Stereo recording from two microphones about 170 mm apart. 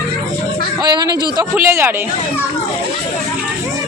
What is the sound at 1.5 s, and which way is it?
Speech, 15° right (ahead or behind).